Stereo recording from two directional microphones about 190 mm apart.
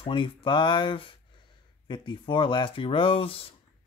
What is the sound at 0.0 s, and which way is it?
Speech, 25° left (ahead or behind).